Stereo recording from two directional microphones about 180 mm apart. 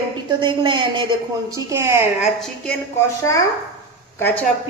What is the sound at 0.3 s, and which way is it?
A woman's voice, 25° right (ahead or behind).